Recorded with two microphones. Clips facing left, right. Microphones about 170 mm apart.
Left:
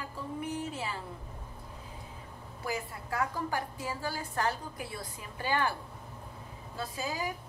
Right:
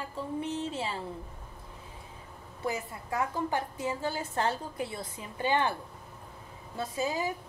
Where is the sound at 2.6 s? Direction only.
20° right (ahead or behind).